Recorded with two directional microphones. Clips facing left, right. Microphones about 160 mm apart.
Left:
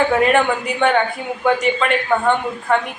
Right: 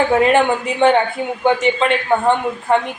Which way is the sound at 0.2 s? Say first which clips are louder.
Right 2 dB; 25° right (ahead or behind).